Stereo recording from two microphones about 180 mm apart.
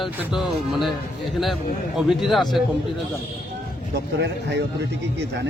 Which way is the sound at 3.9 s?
70° right (ahead or behind).